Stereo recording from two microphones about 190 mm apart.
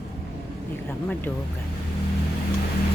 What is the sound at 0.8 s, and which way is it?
Speech, 10° left (ahead or behind).